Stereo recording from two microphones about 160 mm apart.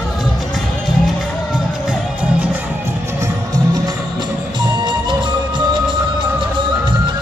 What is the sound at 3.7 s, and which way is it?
Music, 25° right (ahead or behind).